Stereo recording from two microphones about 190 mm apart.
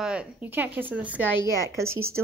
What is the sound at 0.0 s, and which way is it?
A woman's voice, 5° right (ahead or behind).